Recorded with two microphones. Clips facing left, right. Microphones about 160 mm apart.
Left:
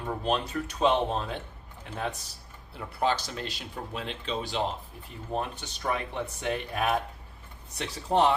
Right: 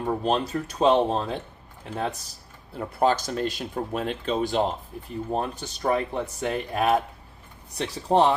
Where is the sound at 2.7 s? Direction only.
45° right (ahead or behind).